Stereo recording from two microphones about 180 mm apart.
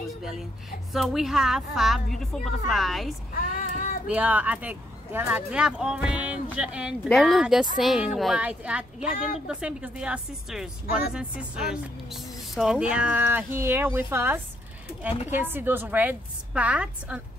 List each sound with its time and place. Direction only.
0.2 s a woman's voice: centre (ahead or behind)
3.3 s female singing: 50° left (ahead or behind)
4.1 s a woman's voice: 10° right (ahead or behind)